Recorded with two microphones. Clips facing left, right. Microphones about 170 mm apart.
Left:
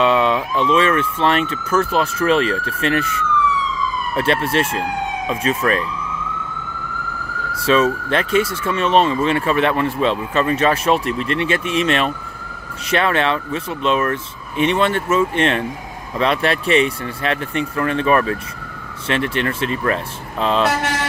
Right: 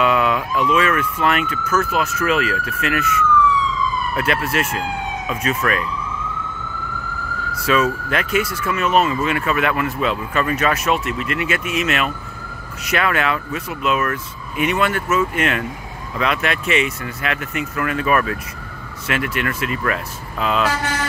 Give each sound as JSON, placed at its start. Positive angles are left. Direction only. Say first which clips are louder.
{"t": 0.0, "sound": "speech", "louder": "left 2 dB", "side_deg": 30}
{"t": 7.5, "sound": "speech", "louder": "left 3 dB", "side_deg": 30}